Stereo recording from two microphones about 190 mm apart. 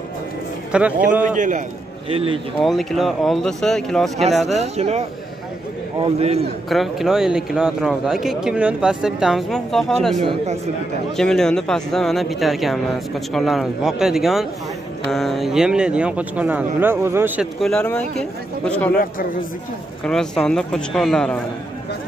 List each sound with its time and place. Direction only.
0.7 s a man's voice: 5° right (ahead or behind)
1.2 s speech: 40° right (ahead or behind)
2.0 s speech: 30° right (ahead or behind)
2.6 s speech: centre (ahead or behind)
4.5 s speech: 35° right (ahead or behind)
6.7 s speech: centre (ahead or behind)
10.2 s speech: 35° right (ahead or behind)
11.1 s speech: 5° left (ahead or behind); by 17.5 s 10° right (ahead or behind)
17.6 s a man's voice: 5° left (ahead or behind)
20.0 s speech: 5° left (ahead or behind)